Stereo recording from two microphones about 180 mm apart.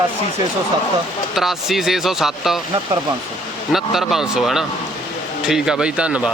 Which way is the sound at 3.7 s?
Centre (ahead or behind).